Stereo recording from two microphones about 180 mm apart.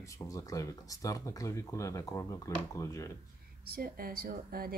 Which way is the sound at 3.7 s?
55° right (ahead or behind).